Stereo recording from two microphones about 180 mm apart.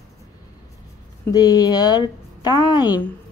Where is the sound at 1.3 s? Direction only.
20° left (ahead or behind).